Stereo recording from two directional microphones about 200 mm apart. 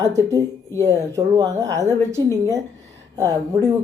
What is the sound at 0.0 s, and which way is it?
A woman's voice, 15° right (ahead or behind).